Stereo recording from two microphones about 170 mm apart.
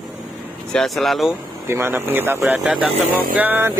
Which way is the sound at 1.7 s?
15° right (ahead or behind).